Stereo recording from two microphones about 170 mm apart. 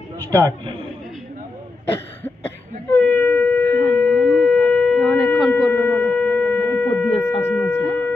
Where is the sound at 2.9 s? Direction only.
10° left (ahead or behind).